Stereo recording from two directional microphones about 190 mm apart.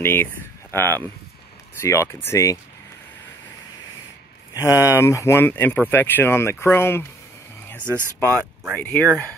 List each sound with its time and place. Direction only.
0.0 s speech: 10° left (ahead or behind)
4.6 s speech: 15° left (ahead or behind)
7.8 s speech: 10° right (ahead or behind)
8.7 s speech: 10° left (ahead or behind)